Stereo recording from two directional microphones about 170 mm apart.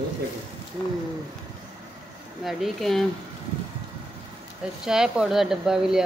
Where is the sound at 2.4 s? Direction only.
Centre (ahead or behind).